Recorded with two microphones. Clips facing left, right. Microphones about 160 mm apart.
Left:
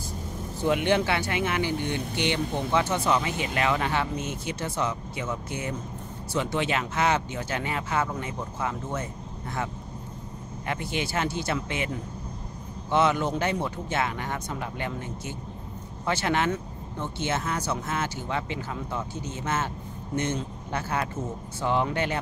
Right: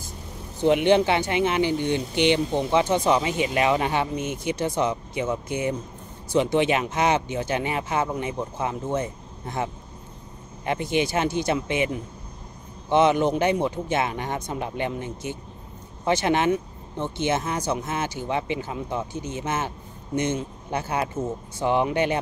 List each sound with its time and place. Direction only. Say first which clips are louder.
0.7 s speech: right 5 dB; 20° right (ahead or behind)